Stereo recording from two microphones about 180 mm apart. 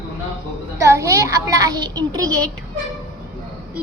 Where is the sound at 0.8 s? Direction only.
15° right (ahead or behind).